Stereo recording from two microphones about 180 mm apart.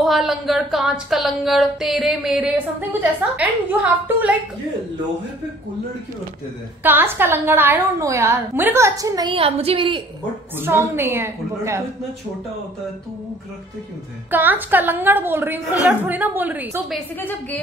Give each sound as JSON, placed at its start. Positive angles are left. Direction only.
{"t": 0.0, "sound": "speech", "side_deg": 0}
{"t": 6.8, "sound": "a woman's voice", "side_deg": -10}
{"t": 10.6, "sound": "a woman's voice", "side_deg": -15}
{"t": 14.3, "sound": "a woman's voice", "side_deg": -10}
{"t": 17.2, "sound": "a woman's voice", "side_deg": 10}